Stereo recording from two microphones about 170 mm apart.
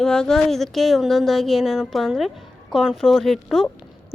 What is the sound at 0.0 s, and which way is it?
Speech, 5° left (ahead or behind).